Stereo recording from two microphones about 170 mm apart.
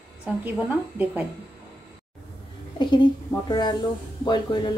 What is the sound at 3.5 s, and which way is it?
Speech, 25° left (ahead or behind).